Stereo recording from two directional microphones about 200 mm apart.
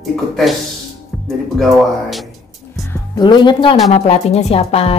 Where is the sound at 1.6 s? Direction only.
Centre (ahead or behind).